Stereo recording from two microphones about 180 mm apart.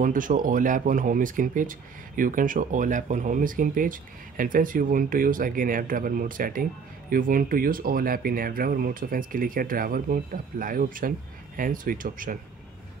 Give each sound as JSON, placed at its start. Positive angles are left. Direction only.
{"t": 0.0, "sound": "speech", "side_deg": -50}